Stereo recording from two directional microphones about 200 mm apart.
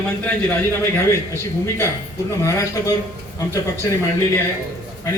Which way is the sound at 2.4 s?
15° left (ahead or behind).